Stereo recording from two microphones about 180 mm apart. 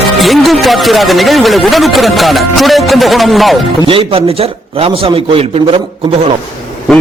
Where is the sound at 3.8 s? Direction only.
30° right (ahead or behind).